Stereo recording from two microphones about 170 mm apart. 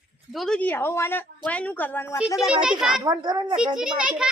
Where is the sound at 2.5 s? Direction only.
5° right (ahead or behind).